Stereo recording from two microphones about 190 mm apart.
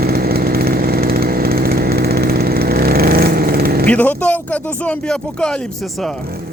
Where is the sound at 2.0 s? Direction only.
55° right (ahead or behind).